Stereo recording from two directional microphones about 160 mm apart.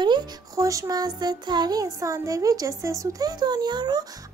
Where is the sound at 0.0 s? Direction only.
25° right (ahead or behind).